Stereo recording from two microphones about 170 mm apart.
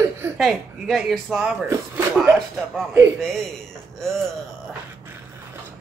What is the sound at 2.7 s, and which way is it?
Speech, 10° right (ahead or behind).